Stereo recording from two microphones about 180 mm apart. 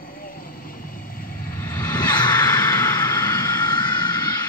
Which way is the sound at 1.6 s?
10° left (ahead or behind).